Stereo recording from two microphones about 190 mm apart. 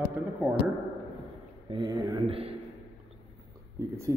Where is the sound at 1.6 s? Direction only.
25° right (ahead or behind).